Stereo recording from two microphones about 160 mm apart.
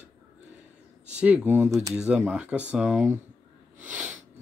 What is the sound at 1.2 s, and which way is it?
Speech, 10° right (ahead or behind).